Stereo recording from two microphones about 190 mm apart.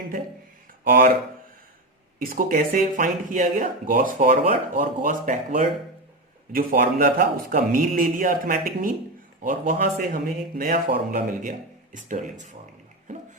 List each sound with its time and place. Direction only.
0.9 s a man's voice: 50° right (ahead or behind)
2.2 s a man's voice: 45° right (ahead or behind)